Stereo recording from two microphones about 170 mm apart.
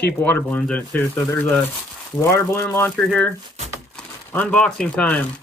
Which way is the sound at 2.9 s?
5° left (ahead or behind).